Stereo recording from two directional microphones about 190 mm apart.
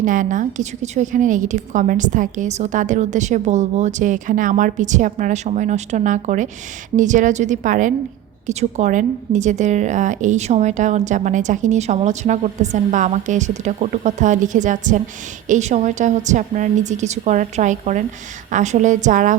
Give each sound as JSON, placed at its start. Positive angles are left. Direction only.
{"t": 0.0, "sound": "speech", "side_deg": -45}